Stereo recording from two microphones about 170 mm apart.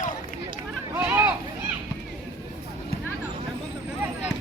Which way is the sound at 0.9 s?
10° right (ahead or behind).